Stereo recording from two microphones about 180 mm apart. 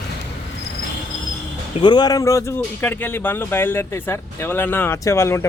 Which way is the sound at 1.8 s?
25° left (ahead or behind).